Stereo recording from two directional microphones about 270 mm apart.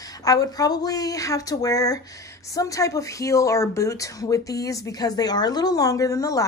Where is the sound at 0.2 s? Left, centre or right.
Centre.